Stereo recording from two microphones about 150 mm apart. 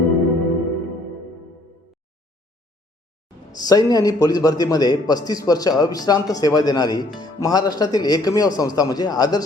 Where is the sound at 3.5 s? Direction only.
25° left (ahead or behind).